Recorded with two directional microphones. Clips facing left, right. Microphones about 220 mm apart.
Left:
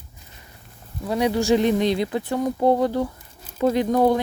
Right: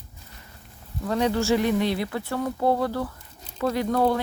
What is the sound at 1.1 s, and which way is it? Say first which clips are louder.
Speech: left 3 dB; 15° left (ahead or behind).